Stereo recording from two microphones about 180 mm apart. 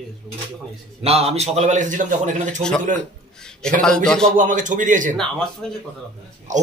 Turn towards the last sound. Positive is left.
turn(degrees=5)  # may be behind; listen again after turning